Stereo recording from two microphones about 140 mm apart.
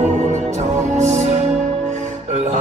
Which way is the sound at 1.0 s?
55° right (ahead or behind).